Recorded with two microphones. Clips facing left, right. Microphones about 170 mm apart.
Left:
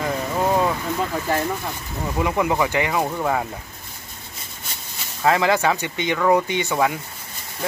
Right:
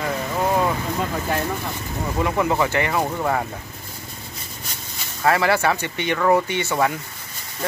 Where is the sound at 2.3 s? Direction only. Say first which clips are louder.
Even; 10° left (ahead or behind).